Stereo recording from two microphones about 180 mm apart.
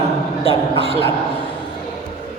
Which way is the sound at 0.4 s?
30° left (ahead or behind).